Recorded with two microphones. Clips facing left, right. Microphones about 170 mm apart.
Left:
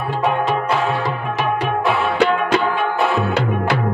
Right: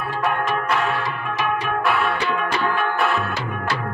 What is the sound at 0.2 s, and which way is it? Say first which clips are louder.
Music: left 4 dB; 25° left (ahead or behind).